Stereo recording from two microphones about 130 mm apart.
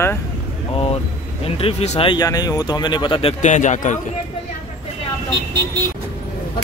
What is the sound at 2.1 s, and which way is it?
Speech, 30° left (ahead or behind).